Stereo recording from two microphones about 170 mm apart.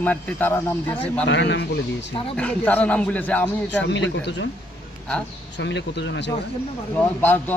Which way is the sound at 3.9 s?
90° left.